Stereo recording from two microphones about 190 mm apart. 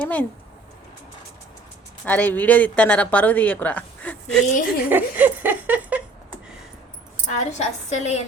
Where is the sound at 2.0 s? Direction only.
10° left (ahead or behind).